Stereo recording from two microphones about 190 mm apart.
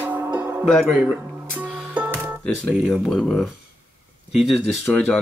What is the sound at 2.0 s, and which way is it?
Music, 10° right (ahead or behind).